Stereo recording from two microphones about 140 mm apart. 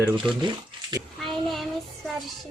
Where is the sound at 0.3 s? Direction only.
30° right (ahead or behind).